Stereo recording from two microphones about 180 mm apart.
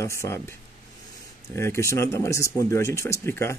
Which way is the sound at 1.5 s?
15° left (ahead or behind).